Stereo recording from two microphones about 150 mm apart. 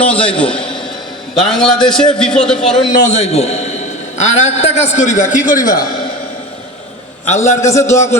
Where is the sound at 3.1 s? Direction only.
45° left (ahead or behind); by 5.7 s 60° left (ahead or behind).